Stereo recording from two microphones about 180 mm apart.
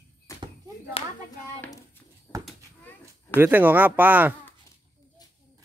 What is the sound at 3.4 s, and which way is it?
Speech, 10° right (ahead or behind).